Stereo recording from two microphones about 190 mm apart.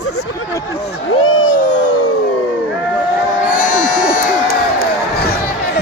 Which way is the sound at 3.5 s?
45° left (ahead or behind).